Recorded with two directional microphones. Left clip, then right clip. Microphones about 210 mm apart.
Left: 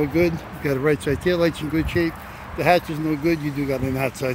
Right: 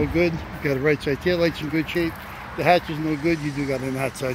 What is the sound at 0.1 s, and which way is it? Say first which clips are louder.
Speech: left 1 dB; centre (ahead or behind).